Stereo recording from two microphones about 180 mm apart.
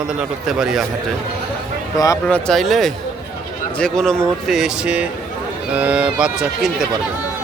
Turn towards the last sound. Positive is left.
turn(degrees=-5)  # may be behind; listen again after turning